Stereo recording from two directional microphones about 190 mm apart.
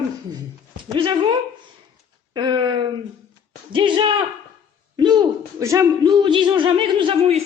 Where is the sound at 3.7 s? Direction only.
25° right (ahead or behind).